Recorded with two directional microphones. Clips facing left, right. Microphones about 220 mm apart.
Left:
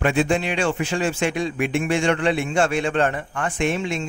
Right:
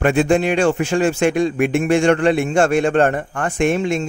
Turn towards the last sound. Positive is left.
turn(degrees=-45)  # may be behind; listen again after turning